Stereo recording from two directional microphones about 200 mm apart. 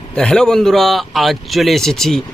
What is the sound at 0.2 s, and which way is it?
A man's voice, 5° left (ahead or behind).